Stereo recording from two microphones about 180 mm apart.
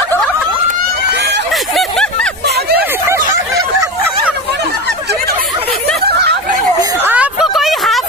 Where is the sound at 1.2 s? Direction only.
70° right (ahead or behind).